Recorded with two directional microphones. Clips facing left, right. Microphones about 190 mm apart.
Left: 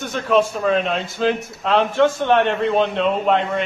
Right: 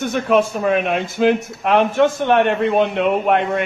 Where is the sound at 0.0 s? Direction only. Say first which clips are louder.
Right 2 dB; 15° right (ahead or behind).